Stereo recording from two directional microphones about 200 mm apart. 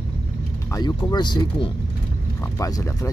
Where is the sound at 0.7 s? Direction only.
20° left (ahead or behind).